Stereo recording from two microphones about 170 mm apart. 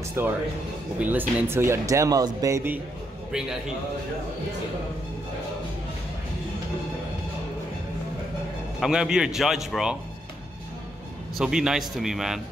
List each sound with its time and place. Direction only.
0.2 s speech: 15° right (ahead or behind)
3.3 s a man's voice: 5° right (ahead or behind)
8.7 s speech: 5° right (ahead or behind)
11.3 s speech: 5° right (ahead or behind)